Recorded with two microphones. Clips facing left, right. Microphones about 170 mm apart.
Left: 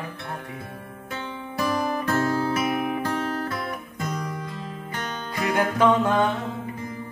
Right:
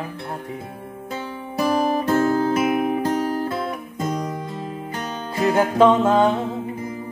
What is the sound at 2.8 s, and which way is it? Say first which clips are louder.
Music: right 5 dB; 45° right (ahead or behind).